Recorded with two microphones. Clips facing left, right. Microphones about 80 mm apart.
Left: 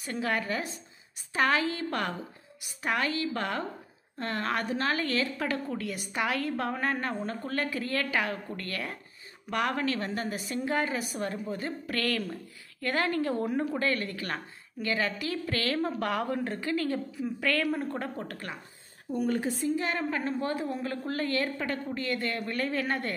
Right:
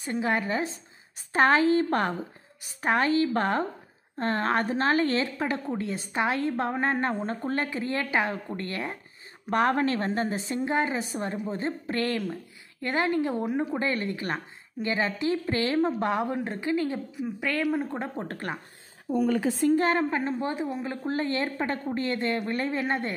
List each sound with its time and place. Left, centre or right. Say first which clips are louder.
0.0 s a woman's voice: right 4 dB; right
19.7 s a woman's voice: right 8 dB; right